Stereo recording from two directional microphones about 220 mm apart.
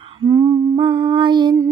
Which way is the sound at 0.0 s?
25° right (ahead or behind).